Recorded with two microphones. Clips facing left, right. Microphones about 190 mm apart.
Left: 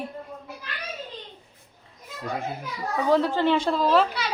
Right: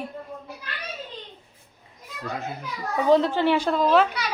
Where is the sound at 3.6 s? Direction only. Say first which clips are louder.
Right 1 dB; centre (ahead or behind).